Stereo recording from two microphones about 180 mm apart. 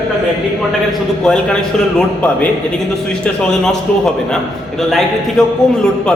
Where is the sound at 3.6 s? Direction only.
5° left (ahead or behind).